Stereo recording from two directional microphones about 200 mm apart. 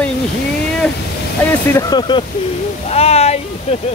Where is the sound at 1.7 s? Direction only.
20° left (ahead or behind).